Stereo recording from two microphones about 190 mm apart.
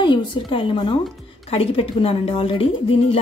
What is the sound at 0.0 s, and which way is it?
A woman's voice, 25° left (ahead or behind).